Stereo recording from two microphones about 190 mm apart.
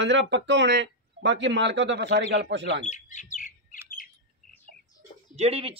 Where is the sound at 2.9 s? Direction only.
40° left (ahead or behind).